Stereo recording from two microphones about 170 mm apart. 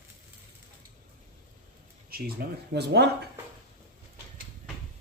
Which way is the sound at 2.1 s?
65° right (ahead or behind).